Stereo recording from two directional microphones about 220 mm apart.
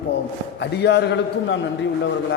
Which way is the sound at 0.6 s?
50° left (ahead or behind).